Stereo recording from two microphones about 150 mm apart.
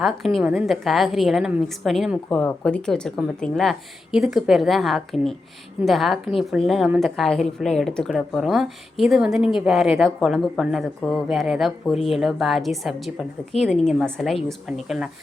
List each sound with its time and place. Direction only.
0.0 s a woman's voice: centre (ahead or behind)